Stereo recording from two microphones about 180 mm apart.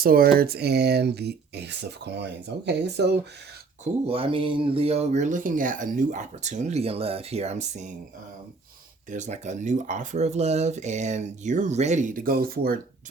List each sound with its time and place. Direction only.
0.0 s speech: 55° right (ahead or behind)
4.0 s speech: 30° right (ahead or behind)
9.0 s speech: 40° right (ahead or behind)